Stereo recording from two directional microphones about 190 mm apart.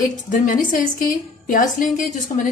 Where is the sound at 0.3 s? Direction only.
45° left (ahead or behind).